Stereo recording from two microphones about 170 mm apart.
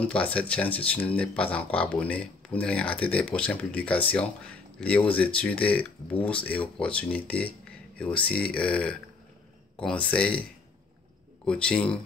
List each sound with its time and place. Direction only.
0.0 s speech: 5° left (ahead or behind)
11.4 s speech: 5° left (ahead or behind)